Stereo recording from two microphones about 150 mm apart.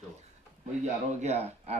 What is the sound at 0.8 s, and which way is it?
Speech, 50° right (ahead or behind).